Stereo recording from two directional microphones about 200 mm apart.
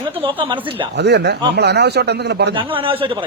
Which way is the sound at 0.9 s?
55° right (ahead or behind).